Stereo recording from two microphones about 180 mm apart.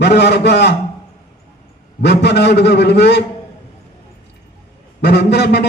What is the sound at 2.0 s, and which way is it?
A man's voice, 70° left (ahead or behind).